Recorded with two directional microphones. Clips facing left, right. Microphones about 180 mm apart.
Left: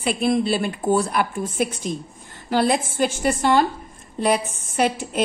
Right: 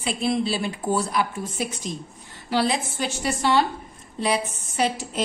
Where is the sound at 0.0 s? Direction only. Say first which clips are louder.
Left 4 dB; 55° left (ahead or behind).